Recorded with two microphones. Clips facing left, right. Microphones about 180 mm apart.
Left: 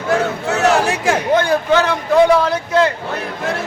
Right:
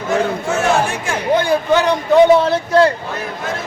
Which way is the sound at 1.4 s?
15° right (ahead or behind).